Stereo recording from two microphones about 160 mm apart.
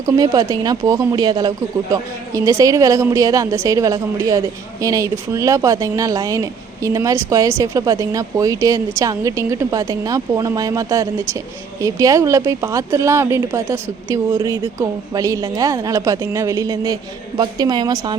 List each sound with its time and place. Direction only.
0.0 s speech: 20° right (ahead or behind)